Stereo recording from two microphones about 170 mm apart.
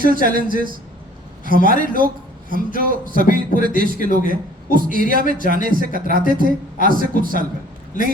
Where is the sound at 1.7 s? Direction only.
55° right (ahead or behind).